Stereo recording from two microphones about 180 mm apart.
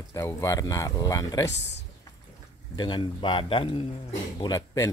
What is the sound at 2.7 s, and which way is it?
Speech, 25° left (ahead or behind).